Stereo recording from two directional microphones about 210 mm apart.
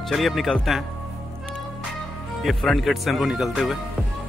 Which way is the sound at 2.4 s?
Centre (ahead or behind).